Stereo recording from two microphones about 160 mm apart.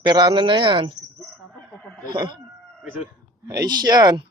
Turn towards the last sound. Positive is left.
turn(degrees=-25)  # may be behind; listen again after turning